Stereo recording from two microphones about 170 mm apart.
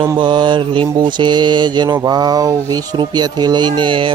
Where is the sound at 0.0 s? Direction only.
25° right (ahead or behind).